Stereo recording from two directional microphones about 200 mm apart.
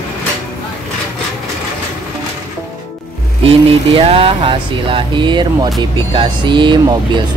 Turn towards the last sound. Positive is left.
turn(degrees=-25)  # may be behind; listen again after turning